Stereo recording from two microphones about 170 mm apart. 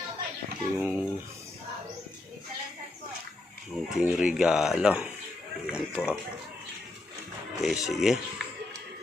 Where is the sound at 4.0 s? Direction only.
5° right (ahead or behind).